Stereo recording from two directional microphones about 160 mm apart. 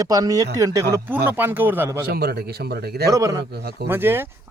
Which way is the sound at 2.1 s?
85° right.